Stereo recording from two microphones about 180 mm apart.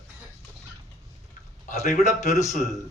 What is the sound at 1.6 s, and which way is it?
Speech, 40° left (ahead or behind).